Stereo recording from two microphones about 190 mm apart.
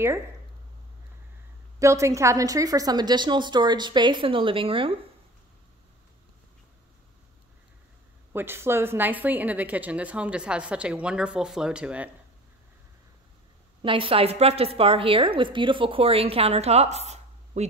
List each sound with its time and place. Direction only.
1.8 s a woman's voice: 15° right (ahead or behind)
8.3 s a woman's voice: 10° right (ahead or behind)
13.8 s a woman's voice: 30° right (ahead or behind)